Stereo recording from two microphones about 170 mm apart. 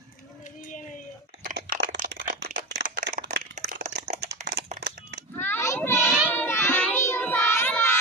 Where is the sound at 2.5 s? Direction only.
90° right.